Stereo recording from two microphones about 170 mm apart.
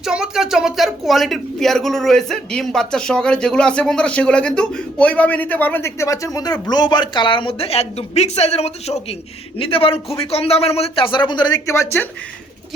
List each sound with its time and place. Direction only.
0.0 s a man's voice: 5° right (ahead or behind); by 12.0 s 15° left (ahead or behind)